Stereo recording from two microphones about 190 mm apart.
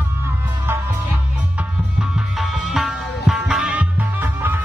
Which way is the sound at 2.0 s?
Centre (ahead or behind).